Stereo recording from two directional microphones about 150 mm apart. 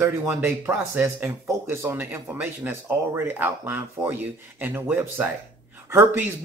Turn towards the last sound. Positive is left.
turn(degrees=-15)  # may be behind; listen again after turning